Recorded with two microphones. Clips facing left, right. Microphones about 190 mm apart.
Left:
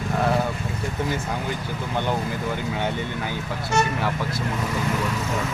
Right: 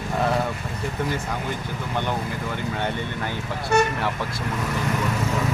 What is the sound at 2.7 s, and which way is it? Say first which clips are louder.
Speech: left 1 dB; 5° left (ahead or behind).